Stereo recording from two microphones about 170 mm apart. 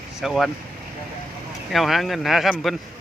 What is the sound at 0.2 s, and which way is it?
Speech, centre (ahead or behind).